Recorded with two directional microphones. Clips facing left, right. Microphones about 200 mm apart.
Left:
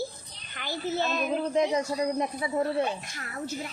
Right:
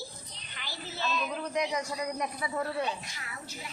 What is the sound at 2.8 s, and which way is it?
Speech, 50° left (ahead or behind).